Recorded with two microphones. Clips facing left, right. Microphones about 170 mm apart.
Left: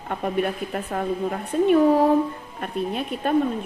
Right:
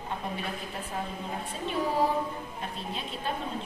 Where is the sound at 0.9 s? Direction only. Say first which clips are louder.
Left 7 dB; 50° left (ahead or behind).